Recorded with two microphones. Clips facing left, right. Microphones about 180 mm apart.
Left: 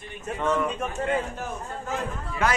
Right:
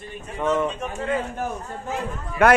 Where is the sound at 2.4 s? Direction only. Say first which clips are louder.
Right 9 dB; 60° right (ahead or behind).